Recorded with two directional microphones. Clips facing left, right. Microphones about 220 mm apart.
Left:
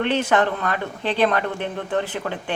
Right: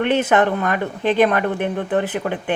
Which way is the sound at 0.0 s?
15° right (ahead or behind).